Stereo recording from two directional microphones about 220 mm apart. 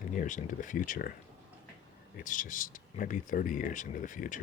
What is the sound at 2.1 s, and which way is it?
Speech, 35° left (ahead or behind).